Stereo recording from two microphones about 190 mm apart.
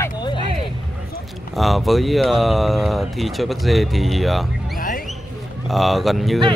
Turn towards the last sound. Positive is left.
turn(degrees=0)  # may be behind; listen again after turning